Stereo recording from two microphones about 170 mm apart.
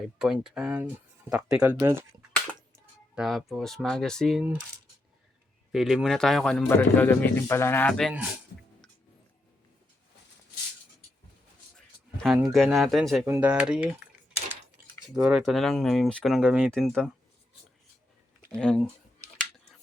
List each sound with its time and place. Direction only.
0.0 s speech: 5° right (ahead or behind)
3.2 s speech: centre (ahead or behind)
5.7 s speech: centre (ahead or behind)
12.1 s speech: centre (ahead or behind)
13.2 s speech: 10° right (ahead or behind)
15.1 s speech: 5° right (ahead or behind)
18.5 s speech: 5° left (ahead or behind)